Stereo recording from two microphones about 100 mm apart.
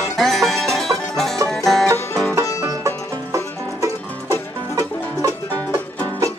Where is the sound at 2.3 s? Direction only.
30° right (ahead or behind).